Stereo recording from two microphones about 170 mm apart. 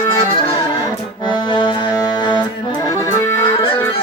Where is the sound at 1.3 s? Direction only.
25° left (ahead or behind).